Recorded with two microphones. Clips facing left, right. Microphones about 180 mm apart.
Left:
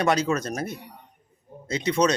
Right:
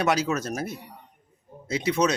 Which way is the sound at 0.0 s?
5° right (ahead or behind).